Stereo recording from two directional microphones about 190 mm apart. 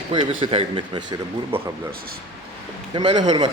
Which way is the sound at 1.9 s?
50° right (ahead or behind).